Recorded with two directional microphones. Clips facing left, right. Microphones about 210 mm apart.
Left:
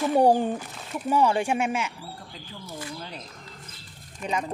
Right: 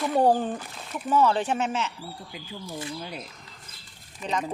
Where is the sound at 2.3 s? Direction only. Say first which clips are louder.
Right 3 dB; 10° right (ahead or behind).